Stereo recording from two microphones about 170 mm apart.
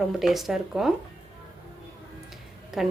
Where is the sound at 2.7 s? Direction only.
5° right (ahead or behind).